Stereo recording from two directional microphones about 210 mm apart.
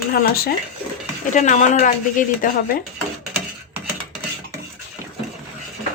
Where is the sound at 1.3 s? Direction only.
35° left (ahead or behind).